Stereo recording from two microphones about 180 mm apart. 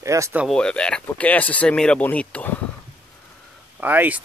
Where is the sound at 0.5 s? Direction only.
5° left (ahead or behind).